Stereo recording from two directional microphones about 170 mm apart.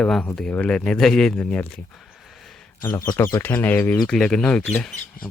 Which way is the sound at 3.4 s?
10° left (ahead or behind).